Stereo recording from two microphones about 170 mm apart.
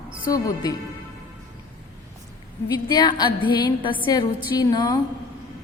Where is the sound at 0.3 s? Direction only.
20° left (ahead or behind).